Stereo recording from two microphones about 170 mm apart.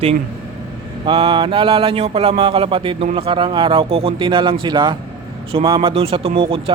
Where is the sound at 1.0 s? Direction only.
25° right (ahead or behind).